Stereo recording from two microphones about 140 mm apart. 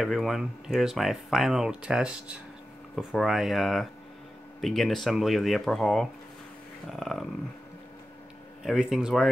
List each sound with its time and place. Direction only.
0.0 s speech: centre (ahead or behind)
8.6 s speech: 5° right (ahead or behind)